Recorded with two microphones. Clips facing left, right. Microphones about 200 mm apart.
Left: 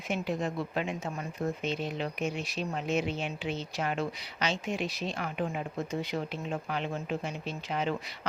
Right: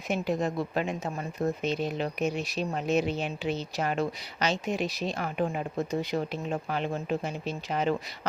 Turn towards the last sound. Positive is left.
turn(degrees=-40)  # may be behind; listen again after turning